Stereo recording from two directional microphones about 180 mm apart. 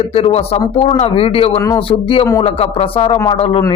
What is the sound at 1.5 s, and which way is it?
Speech, 15° left (ahead or behind).